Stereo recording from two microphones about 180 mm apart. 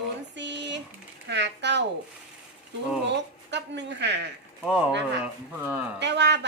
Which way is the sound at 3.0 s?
75° right (ahead or behind).